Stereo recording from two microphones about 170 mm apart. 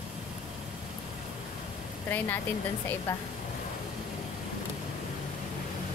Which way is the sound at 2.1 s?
10° left (ahead or behind).